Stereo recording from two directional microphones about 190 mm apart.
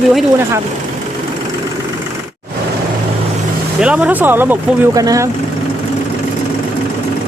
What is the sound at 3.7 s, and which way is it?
Speech, 5° right (ahead or behind).